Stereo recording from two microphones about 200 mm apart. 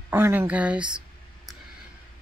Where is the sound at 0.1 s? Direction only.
10° right (ahead or behind).